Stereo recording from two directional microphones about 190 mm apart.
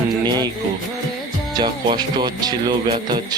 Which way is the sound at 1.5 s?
20° right (ahead or behind).